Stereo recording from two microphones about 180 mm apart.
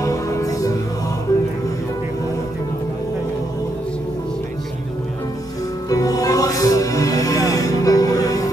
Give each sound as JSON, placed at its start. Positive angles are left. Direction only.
{"t": 0.0, "sound": "music", "side_deg": 20}
{"t": 5.9, "sound": "music", "side_deg": 20}